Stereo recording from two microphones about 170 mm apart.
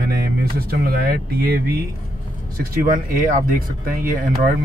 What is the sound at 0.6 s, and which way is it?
Speech, 65° right (ahead or behind).